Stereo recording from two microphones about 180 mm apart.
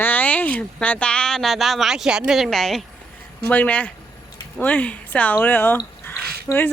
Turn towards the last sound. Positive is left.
turn(degrees=10)  # may be behind; listen again after turning